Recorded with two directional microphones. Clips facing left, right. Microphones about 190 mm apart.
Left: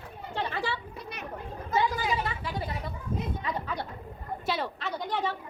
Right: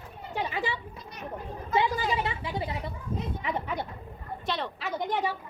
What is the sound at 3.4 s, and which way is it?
Chatter, 20° right (ahead or behind).